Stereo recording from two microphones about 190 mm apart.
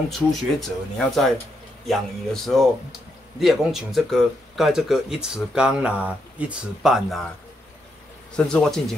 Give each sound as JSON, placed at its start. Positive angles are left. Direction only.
{"t": 0.3, "sound": "speech", "side_deg": 0}
{"t": 8.3, "sound": "speech", "side_deg": 5}